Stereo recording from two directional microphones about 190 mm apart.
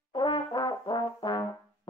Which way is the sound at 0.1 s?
25° left (ahead or behind).